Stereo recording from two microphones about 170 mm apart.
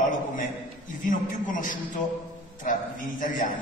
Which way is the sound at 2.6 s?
50° left (ahead or behind).